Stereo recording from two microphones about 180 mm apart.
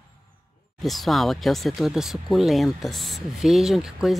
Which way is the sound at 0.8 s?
Centre (ahead or behind).